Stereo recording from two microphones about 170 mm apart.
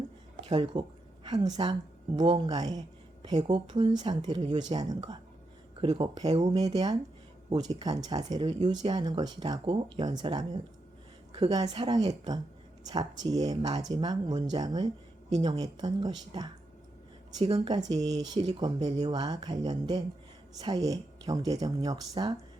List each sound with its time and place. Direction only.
0.4 s speech: 25° right (ahead or behind)
17.7 s speech: 25° right (ahead or behind)